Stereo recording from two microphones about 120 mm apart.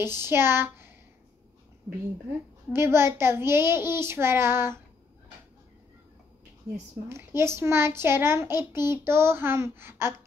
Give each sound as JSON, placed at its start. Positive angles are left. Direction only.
{"t": 0.0, "sound": "a child's voice", "side_deg": -20}
{"t": 2.7, "sound": "a child's voice", "side_deg": -20}
{"t": 7.1, "sound": "a child's voice", "side_deg": -20}